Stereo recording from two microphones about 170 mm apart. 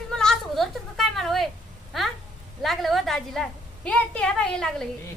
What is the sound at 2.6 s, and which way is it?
A woman's voice, centre (ahead or behind).